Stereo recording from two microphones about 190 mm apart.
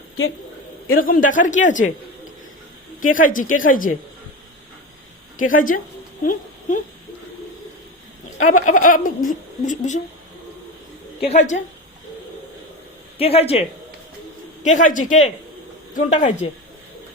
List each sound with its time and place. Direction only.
0.9 s speech: 50° left (ahead or behind)
3.0 s speech: 45° left (ahead or behind)
5.4 s speech: 45° left (ahead or behind)
8.4 s a sound: 90° left
8.6 s speech: 45° left (ahead or behind)
11.3 s speech: 40° left (ahead or behind)
13.1 s speech: 30° left (ahead or behind)